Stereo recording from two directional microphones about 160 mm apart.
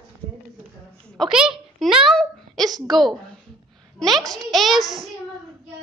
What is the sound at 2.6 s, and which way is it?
Speech, 25° right (ahead or behind).